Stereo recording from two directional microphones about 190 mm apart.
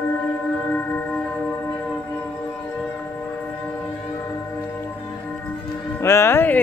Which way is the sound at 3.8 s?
15° left (ahead or behind).